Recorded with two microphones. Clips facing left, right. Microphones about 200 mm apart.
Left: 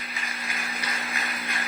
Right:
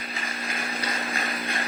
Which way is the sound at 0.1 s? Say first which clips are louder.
Right 4 dB; 35° right (ahead or behind).